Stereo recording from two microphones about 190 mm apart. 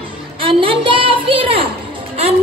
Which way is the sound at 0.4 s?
30° right (ahead or behind).